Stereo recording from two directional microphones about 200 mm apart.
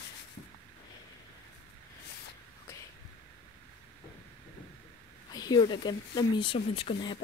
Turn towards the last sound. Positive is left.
turn(degrees=25)  # may be behind; listen again after turning